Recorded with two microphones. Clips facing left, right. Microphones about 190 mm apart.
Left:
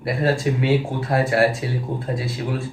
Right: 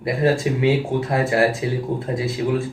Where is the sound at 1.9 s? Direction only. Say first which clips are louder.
Right 2 dB; 20° right (ahead or behind).